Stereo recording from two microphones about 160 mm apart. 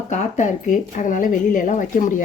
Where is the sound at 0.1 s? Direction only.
50° left (ahead or behind).